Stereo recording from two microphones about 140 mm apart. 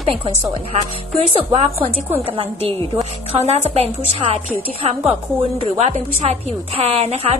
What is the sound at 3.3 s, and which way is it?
A woman's voice, 50° right (ahead or behind).